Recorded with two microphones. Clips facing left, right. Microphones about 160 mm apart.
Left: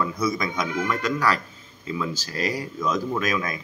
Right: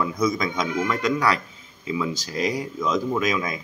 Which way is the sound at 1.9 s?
15° right (ahead or behind).